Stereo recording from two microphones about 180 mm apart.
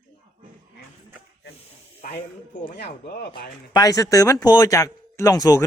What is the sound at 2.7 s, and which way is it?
Speech, 65° left (ahead or behind).